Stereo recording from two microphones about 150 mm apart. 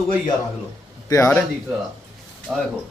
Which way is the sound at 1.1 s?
20° left (ahead or behind).